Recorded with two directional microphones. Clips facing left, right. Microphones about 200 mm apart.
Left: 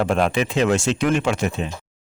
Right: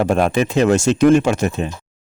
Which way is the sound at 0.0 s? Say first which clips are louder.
Right 3 dB; 45° right (ahead or behind).